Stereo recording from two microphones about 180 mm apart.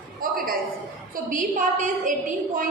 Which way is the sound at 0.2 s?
55° right (ahead or behind).